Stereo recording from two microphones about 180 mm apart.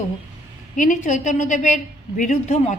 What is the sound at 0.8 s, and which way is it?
A woman's voice, 45° left (ahead or behind).